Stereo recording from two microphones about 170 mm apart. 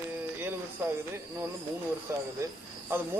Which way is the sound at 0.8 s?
15° right (ahead or behind).